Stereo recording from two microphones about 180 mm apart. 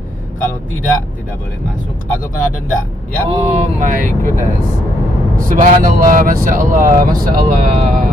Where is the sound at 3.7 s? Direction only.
45° right (ahead or behind).